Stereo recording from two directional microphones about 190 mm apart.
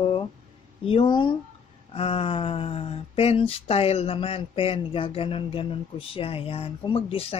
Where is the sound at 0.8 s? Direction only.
25° left (ahead or behind).